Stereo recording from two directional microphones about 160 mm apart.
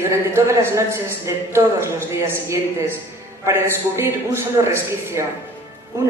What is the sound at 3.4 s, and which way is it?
A man's voice, 15° right (ahead or behind).